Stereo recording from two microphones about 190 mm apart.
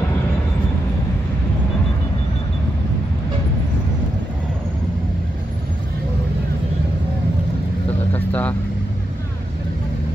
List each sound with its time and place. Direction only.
8.1 s vehicle: 10° left (ahead or behind)